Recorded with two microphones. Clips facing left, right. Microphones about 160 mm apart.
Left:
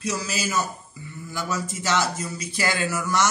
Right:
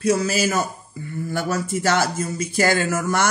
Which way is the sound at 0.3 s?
55° right (ahead or behind).